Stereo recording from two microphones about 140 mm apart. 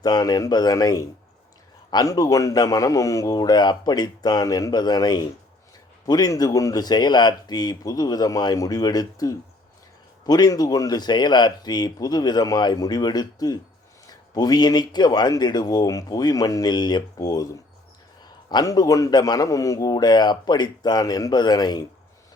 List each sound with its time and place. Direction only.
0.0 s a man's voice: 30° left (ahead or behind)